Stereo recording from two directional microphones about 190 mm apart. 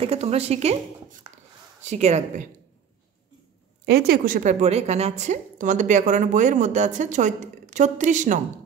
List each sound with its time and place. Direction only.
0.0 s a woman's voice: 35° right (ahead or behind)
1.8 s a woman's voice: 35° right (ahead or behind)
3.8 s a woman's voice: 55° right (ahead or behind)